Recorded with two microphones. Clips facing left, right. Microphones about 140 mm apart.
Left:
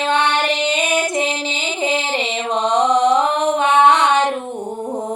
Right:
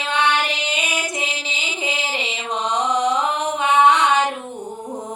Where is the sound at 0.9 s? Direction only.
60° left (ahead or behind).